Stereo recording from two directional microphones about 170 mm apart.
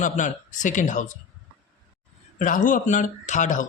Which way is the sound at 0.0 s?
45° left (ahead or behind).